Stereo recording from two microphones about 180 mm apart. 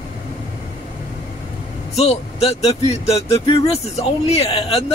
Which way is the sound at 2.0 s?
35° left (ahead or behind).